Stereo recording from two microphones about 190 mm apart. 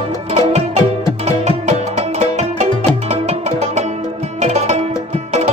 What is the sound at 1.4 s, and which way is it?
Music, 35° right (ahead or behind).